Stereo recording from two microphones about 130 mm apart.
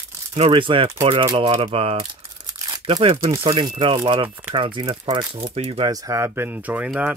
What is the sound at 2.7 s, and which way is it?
Crumpling, 40° right (ahead or behind).